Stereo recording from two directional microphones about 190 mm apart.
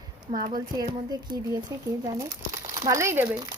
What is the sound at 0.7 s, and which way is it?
Speech, 20° right (ahead or behind).